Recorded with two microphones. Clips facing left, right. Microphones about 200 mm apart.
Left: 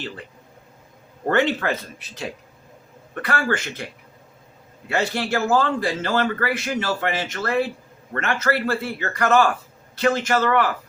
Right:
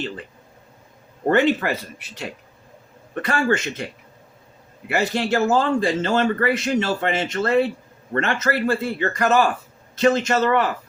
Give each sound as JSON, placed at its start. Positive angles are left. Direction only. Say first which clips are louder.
{"t": 1.3, "sound": "speech", "louder": "right 2 dB", "side_deg": -15}
{"t": 3.2, "sound": "speech", "louder": "right 3 dB", "side_deg": -25}
{"t": 4.9, "sound": "speech", "louder": "right 2 dB", "side_deg": -15}